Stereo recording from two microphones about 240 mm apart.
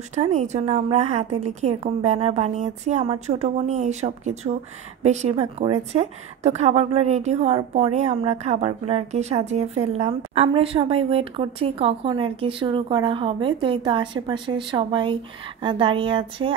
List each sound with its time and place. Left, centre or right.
0.1 s a woman's voice: right